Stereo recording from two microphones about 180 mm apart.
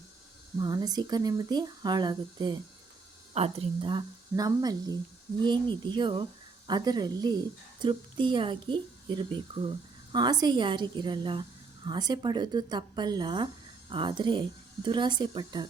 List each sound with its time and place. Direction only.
0.6 s speech: 20° right (ahead or behind)